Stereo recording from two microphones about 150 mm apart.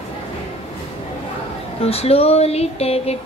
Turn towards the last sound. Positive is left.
turn(degrees=40)  # may be behind; listen again after turning